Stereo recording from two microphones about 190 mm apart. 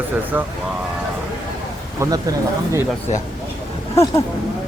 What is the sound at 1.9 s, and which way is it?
Speech, 15° right (ahead or behind).